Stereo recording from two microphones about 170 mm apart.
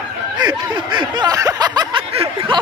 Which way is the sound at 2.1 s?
35° right (ahead or behind).